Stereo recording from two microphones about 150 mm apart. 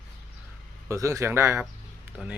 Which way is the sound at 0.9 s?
20° right (ahead or behind).